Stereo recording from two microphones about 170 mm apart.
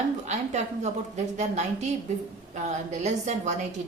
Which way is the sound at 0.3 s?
40° right (ahead or behind).